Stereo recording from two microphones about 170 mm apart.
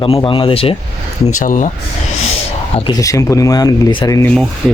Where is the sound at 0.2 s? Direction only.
30° left (ahead or behind).